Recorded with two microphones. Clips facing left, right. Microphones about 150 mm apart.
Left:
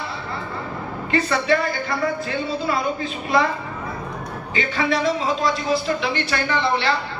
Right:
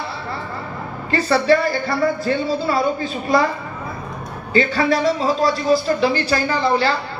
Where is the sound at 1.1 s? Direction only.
35° right (ahead or behind).